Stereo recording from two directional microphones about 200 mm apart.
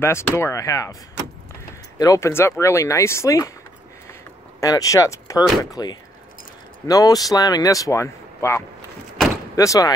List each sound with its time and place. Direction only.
0.0 s speech: 10° left (ahead or behind)
2.0 s speech: 15° left (ahead or behind)
4.1 s a sound: 15° left (ahead or behind)
5.6 s speech: 20° left (ahead or behind)